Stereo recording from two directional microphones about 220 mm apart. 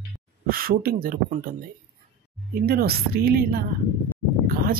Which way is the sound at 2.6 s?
45° right (ahead or behind).